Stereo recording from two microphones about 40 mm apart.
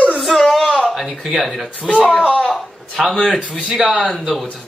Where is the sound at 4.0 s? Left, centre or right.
Centre.